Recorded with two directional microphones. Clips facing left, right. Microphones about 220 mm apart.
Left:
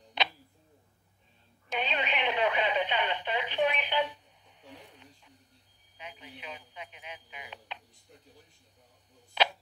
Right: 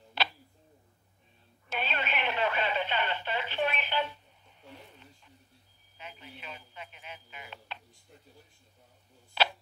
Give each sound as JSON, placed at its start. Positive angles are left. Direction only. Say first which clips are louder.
{"t": 0.2, "sound": "tick-tock", "louder": "left 1 dB", "side_deg": 20}
{"t": 1.7, "sound": "radio", "louder": "left 2 dB", "side_deg": 15}
{"t": 5.9, "sound": "a man's voice", "louder": "left 1 dB", "side_deg": 15}